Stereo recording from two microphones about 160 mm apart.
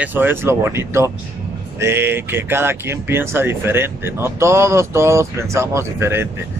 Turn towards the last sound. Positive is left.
turn(degrees=-15)  # may be behind; listen again after turning